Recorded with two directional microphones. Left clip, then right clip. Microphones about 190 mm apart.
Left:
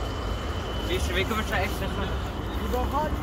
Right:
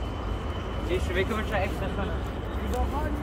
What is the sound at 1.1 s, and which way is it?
Speech, 40° left (ahead or behind).